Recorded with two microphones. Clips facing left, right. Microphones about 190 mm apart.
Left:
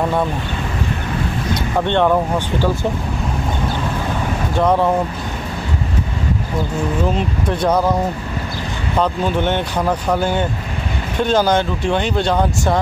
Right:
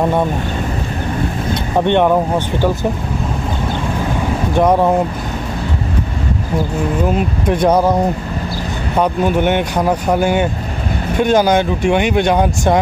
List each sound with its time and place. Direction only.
1.5 s speech: 15° right (ahead or behind)
4.6 s speech: 15° right (ahead or behind)
7.2 s speech: 15° right (ahead or behind)
8.9 s speech: 15° right (ahead or behind)